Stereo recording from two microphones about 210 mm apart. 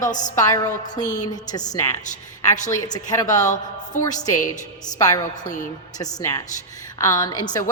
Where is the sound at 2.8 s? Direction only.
20° left (ahead or behind).